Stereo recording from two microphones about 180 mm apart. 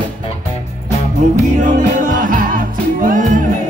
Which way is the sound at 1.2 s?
40° right (ahead or behind).